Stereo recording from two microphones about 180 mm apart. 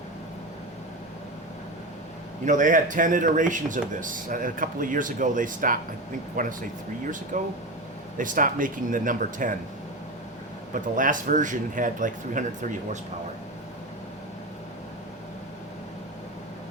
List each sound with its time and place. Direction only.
2.4 s speech: 45° right (ahead or behind)
10.8 s speech: 45° right (ahead or behind)